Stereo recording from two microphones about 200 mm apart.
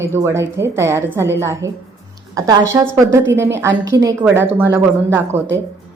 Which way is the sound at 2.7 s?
15° right (ahead or behind).